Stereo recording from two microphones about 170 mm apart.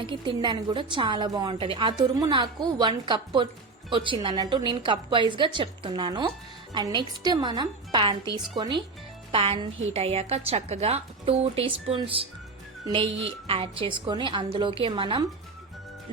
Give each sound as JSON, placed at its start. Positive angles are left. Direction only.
{"t": 0.0, "sound": "a woman's voice", "side_deg": -30}